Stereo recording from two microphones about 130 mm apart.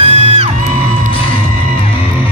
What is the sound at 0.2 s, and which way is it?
Music, 50° right (ahead or behind).